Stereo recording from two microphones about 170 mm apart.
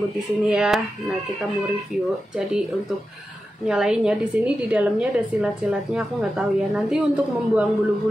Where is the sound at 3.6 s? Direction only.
5° right (ahead or behind).